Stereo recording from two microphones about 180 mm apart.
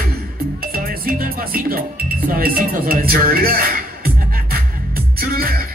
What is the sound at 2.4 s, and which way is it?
Speech, 55° right (ahead or behind).